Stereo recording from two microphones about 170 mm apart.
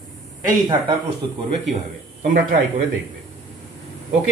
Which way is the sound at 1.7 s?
45° right (ahead or behind).